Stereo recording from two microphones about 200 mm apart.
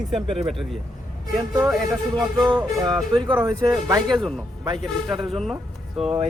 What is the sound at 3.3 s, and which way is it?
Speech, 20° right (ahead or behind).